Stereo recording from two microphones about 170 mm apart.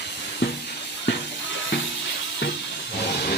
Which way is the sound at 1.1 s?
90° left.